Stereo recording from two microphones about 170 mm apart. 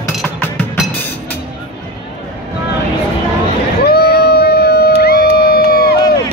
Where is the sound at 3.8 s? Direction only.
65° left (ahead or behind).